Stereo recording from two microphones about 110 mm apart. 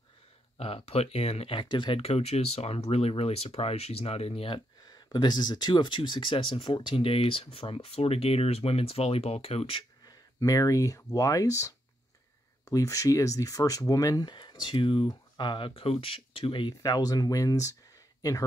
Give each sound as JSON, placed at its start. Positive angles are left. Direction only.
{"t": 0.6, "sound": "speech", "side_deg": 60}
{"t": 4.8, "sound": "speech", "side_deg": 40}
{"t": 10.0, "sound": "speech", "side_deg": 30}
{"t": 16.8, "sound": "speech", "side_deg": 35}